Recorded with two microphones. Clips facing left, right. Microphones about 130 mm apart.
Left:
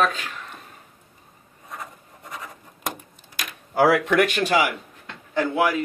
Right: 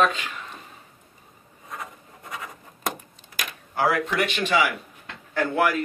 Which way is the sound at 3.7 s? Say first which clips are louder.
Left 6 dB; 90° left.